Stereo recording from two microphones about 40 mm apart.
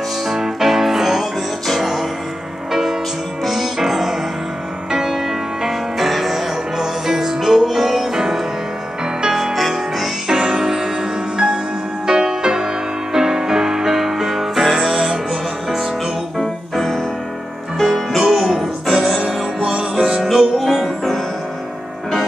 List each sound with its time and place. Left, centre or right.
0.3 s music: centre
10.2 s music: centre
16.3 s music: centre
18.2 s music: centre
19.6 s music: centre
20.2 s music: centre